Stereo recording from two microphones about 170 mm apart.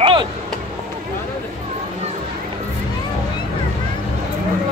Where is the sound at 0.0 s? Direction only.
30° right (ahead or behind).